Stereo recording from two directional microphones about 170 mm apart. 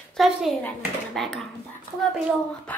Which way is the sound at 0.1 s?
Centre (ahead or behind).